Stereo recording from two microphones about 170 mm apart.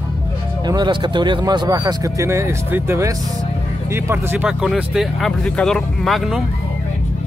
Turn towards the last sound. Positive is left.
turn(degrees=0)  # may be behind; listen again after turning